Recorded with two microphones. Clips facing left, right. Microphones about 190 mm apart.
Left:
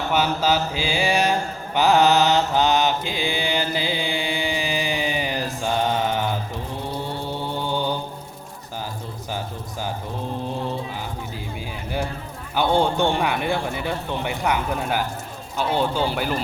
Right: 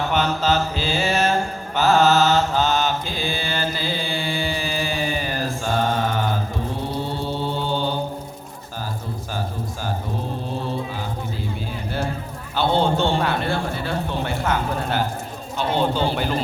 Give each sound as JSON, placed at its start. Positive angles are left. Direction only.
{"t": 0.1, "sound": "mantra", "side_deg": 10}
{"t": 12.5, "sound": "speech", "side_deg": 15}